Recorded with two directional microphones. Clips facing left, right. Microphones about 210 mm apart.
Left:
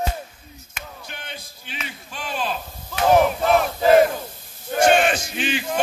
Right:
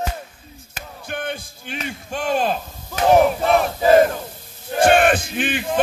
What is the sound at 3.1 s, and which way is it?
Battle cry, centre (ahead or behind).